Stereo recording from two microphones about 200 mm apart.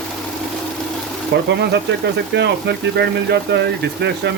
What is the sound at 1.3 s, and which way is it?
Speech, 60° right (ahead or behind).